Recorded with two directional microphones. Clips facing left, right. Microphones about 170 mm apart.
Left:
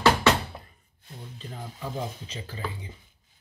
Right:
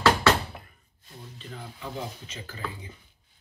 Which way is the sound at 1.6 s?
35° left (ahead or behind).